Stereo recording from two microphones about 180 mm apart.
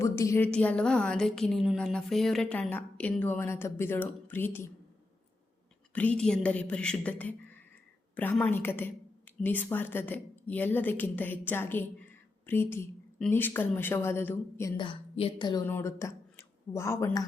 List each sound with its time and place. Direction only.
0.0 s a woman's voice: 15° left (ahead or behind)
5.9 s a woman's voice: 10° left (ahead or behind)
14.8 s a woman's voice: 30° left (ahead or behind)
15.6 s speech: 15° left (ahead or behind)